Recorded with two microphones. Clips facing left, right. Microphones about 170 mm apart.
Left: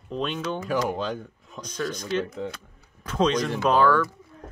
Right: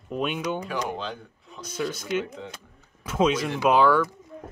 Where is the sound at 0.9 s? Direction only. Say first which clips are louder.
Left 4 dB; 45° left (ahead or behind).